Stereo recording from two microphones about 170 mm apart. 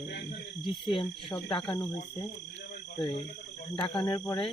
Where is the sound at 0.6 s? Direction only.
30° left (ahead or behind).